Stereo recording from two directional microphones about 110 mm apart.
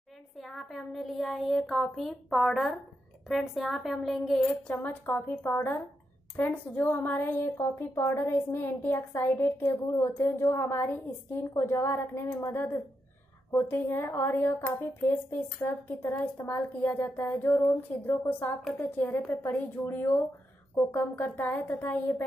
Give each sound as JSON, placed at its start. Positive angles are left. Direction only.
{"t": 0.4, "sound": "speech", "side_deg": 0}
{"t": 4.5, "sound": "a woman's voice", "side_deg": 15}